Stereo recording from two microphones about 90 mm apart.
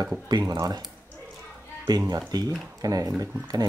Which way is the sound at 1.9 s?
45° right (ahead or behind).